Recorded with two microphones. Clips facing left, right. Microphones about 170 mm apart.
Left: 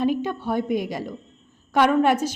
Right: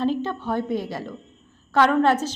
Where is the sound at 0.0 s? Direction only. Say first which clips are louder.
Left 1 dB; 15° left (ahead or behind).